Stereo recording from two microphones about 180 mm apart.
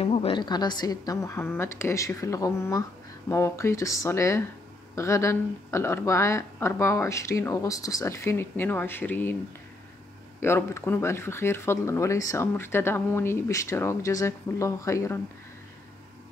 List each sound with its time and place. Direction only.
0.0 s a woman's voice: 30° left (ahead or behind); by 9.4 s 10° left (ahead or behind)
10.4 s speech: 15° left (ahead or behind)